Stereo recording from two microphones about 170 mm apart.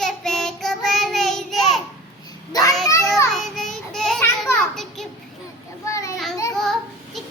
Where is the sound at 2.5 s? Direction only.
20° left (ahead or behind).